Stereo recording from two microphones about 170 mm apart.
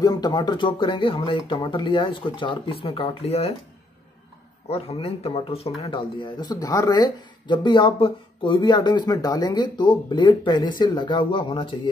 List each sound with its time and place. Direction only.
0.0 s speech: 25° left (ahead or behind)
4.6 s speech: 35° left (ahead or behind)